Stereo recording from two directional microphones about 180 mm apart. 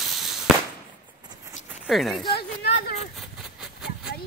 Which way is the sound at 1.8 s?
Centre (ahead or behind).